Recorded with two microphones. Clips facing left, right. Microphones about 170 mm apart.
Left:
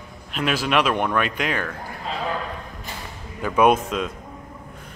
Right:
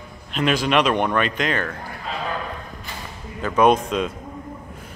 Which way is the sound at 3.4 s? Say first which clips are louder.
Right 1 dB; 10° left (ahead or behind).